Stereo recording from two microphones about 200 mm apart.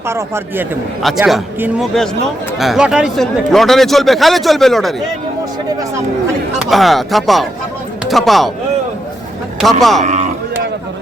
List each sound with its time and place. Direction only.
0.1 s speech: 15° right (ahead or behind)
1.0 s speech: centre (ahead or behind)
6.7 s speech: centre (ahead or behind)
9.6 s speech: centre (ahead or behind)
10.0 s a sound: 35° right (ahead or behind)